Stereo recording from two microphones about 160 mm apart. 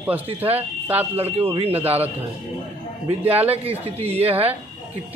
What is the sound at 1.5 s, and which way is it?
Speech, 40° right (ahead or behind).